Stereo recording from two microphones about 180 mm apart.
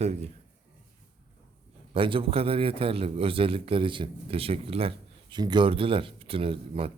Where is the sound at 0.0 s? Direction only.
35° right (ahead or behind).